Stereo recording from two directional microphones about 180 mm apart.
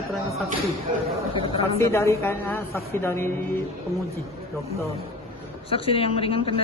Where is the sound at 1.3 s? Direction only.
30° left (ahead or behind).